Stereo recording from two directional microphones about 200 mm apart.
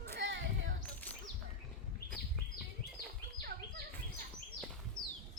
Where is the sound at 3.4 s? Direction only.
50° right (ahead or behind).